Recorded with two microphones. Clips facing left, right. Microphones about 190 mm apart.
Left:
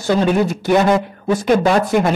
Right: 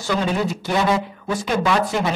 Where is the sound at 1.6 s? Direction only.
45° left (ahead or behind).